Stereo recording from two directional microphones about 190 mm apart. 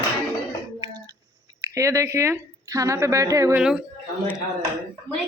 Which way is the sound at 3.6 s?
5° right (ahead or behind).